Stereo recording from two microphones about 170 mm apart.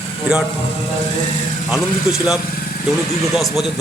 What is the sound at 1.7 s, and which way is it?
A man's voice, 5° right (ahead or behind).